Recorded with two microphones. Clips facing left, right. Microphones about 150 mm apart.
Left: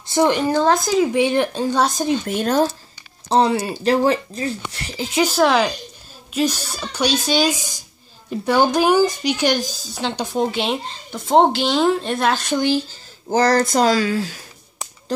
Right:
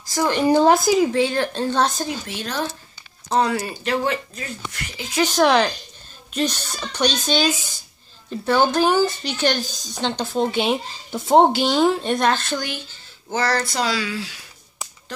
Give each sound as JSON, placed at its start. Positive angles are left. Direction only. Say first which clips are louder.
{"t": 0.0, "sound": "speech", "louder": "left 5 dB", "side_deg": 25}
{"t": 0.5, "sound": "speech", "louder": "right 2 dB", "side_deg": -15}
{"t": 1.1, "sound": "speech", "louder": "left 3 dB", "side_deg": 20}
{"t": 2.2, "sound": "speech", "louder": "left 9 dB", "side_deg": 50}
{"t": 3.3, "sound": "speech", "louder": "left 4 dB", "side_deg": 25}
{"t": 5.2, "sound": "speech", "louder": "even", "side_deg": 5}
{"t": 10.5, "sound": "speech", "louder": "right 1 dB", "side_deg": 0}
{"t": 12.5, "sound": "speech", "louder": "left 10 dB", "side_deg": 30}
{"t": 13.3, "sound": "speech", "louder": "left 6 dB", "side_deg": 40}